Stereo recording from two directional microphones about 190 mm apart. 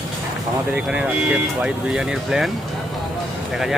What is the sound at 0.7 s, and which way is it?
Speech, 5° right (ahead or behind).